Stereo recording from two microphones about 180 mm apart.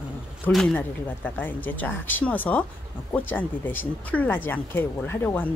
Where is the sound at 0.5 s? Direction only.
Centre (ahead or behind).